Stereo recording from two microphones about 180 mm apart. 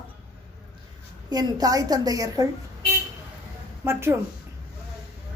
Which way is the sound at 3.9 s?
15° right (ahead or behind).